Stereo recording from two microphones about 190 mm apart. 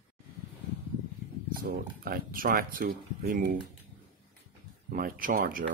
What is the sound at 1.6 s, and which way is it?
Speech, 55° right (ahead or behind).